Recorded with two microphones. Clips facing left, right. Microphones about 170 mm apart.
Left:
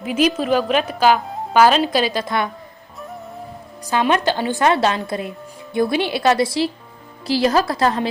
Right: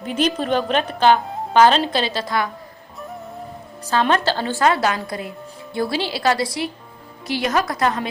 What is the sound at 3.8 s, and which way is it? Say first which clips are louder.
A woman's voice: left 1 dB; 15° left (ahead or behind).